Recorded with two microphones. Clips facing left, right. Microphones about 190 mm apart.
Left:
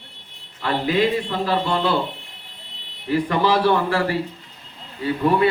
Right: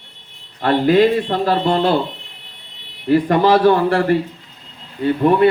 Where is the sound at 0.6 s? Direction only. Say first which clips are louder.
Right 7 dB; 50° right (ahead or behind).